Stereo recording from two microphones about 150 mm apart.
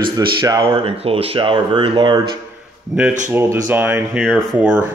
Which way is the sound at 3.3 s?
15° right (ahead or behind).